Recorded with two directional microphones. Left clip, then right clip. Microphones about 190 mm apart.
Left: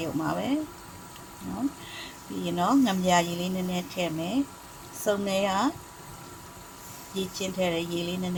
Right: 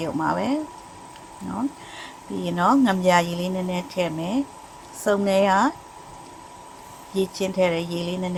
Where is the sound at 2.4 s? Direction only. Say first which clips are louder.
Right 5 dB; 20° right (ahead or behind).